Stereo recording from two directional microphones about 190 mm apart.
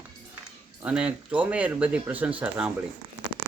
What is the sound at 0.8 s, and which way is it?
Speech, 5° right (ahead or behind).